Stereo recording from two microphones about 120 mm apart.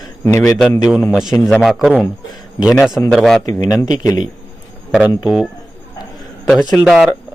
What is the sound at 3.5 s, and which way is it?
Speech, 35° left (ahead or behind).